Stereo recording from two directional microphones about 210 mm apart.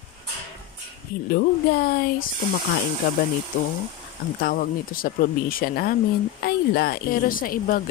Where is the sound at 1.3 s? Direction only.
45° left (ahead or behind).